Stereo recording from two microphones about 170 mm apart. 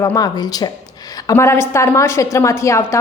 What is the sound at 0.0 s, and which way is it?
A woman's voice, 20° left (ahead or behind).